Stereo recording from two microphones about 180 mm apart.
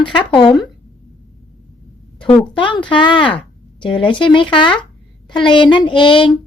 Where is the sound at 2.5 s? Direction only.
25° left (ahead or behind).